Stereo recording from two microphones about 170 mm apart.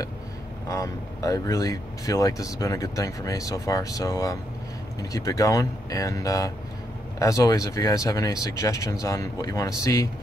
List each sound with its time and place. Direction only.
0.7 s speech: 20° left (ahead or behind)